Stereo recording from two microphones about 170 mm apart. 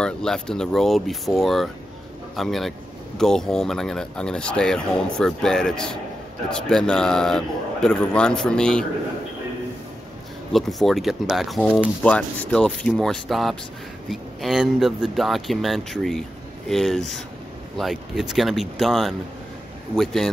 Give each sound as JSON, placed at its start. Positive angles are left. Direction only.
{"t": 0.0, "sound": "speech", "side_deg": 5}
{"t": 10.5, "sound": "speech", "side_deg": 0}